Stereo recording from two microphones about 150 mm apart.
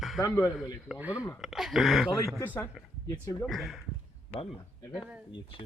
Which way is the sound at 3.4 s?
Centre (ahead or behind).